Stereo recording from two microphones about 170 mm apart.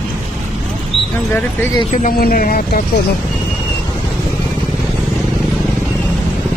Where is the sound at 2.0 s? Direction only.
60° left (ahead or behind).